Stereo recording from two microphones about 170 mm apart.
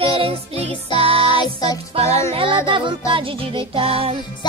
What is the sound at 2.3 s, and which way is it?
Music, 30° right (ahead or behind).